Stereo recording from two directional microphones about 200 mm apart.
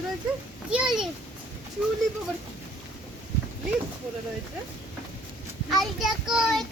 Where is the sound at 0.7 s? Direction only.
5° right (ahead or behind).